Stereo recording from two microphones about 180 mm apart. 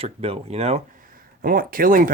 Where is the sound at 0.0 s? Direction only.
35° right (ahead or behind).